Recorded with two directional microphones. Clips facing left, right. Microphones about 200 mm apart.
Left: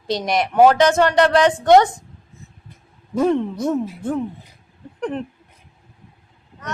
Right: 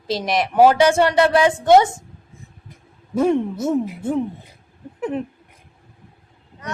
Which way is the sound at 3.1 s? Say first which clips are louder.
Even; 10° right (ahead or behind).